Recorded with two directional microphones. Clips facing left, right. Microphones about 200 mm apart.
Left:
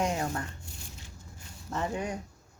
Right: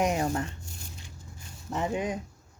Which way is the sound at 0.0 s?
20° right (ahead or behind).